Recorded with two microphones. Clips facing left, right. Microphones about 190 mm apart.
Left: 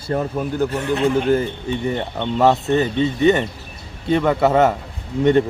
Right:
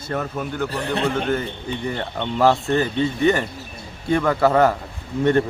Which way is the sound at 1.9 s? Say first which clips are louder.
Left 3 dB; 20° left (ahead or behind).